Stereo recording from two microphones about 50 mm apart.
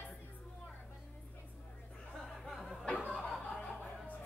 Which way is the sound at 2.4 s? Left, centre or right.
Centre.